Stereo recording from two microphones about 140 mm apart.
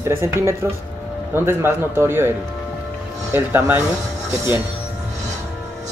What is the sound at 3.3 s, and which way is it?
Speech, 15° right (ahead or behind).